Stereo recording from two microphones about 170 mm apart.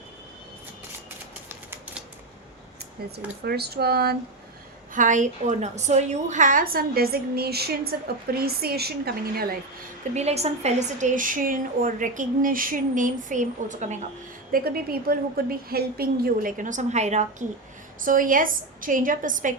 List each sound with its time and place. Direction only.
3.0 s speech: 65° right (ahead or behind)
4.9 s a woman's voice: 50° right (ahead or behind)
10.2 s a woman's voice: 40° right (ahead or behind)
14.5 s a woman's voice: 60° right (ahead or behind); by 17.2 s 40° right (ahead or behind)
18.0 s a woman's voice: 55° right (ahead or behind)